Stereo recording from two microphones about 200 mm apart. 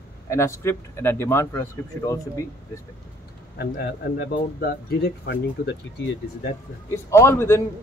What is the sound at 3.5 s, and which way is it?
Speech, 55° left (ahead or behind).